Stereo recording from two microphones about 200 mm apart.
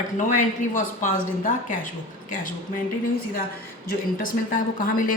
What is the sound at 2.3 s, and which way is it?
Speech, 40° left (ahead or behind).